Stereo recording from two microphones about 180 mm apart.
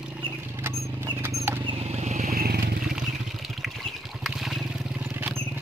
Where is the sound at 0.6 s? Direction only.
15° right (ahead or behind).